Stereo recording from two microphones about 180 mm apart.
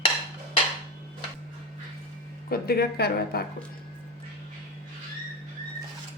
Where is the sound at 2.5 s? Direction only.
60° left (ahead or behind).